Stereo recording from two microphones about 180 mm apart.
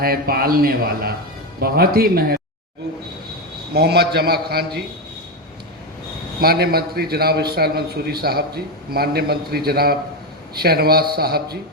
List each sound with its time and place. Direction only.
0.0 s a man's voice: 55° right (ahead or behind)
3.7 s a man's voice: 65° right (ahead or behind)
6.4 s a man's voice: 60° right (ahead or behind)